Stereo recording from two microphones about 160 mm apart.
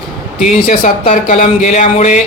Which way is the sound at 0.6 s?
55° left (ahead or behind).